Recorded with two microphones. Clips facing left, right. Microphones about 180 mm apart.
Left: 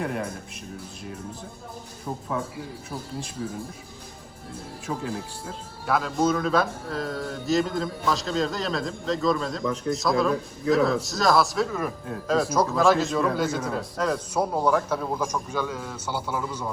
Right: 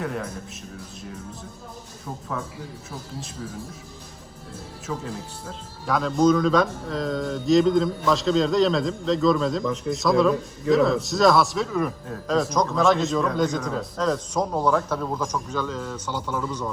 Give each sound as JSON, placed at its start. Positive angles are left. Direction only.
{"t": 4.9, "sound": "speech", "side_deg": 20}
{"t": 5.8, "sound": "speech", "side_deg": 5}